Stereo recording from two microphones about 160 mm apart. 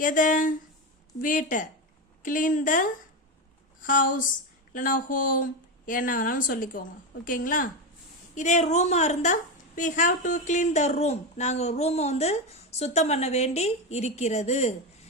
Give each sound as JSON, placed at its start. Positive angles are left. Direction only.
{"t": 0.0, "sound": "a woman's voice", "side_deg": 55}
{"t": 8.4, "sound": "a woman's voice", "side_deg": 45}